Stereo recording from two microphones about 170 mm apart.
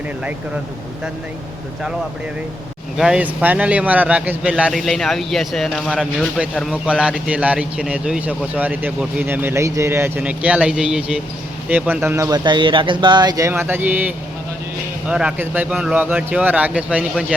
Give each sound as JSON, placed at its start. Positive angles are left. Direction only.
{"t": 3.0, "sound": "speech", "side_deg": -5}